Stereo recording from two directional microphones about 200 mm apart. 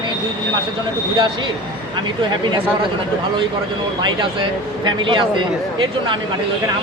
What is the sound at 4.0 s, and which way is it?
Speech, 25° right (ahead or behind).